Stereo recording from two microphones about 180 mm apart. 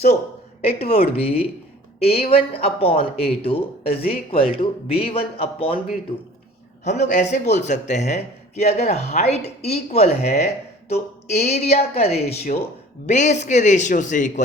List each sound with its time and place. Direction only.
0.6 s a man's voice: 35° left (ahead or behind)
6.8 s a man's voice: 40° left (ahead or behind)